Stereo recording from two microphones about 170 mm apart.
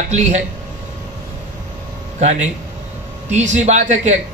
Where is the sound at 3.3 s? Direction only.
45° right (ahead or behind).